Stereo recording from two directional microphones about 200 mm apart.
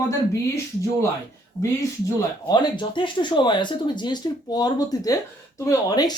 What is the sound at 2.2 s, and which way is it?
Speech, 20° left (ahead or behind).